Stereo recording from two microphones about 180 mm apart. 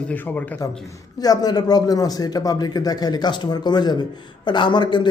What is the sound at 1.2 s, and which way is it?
Speech, 20° left (ahead or behind).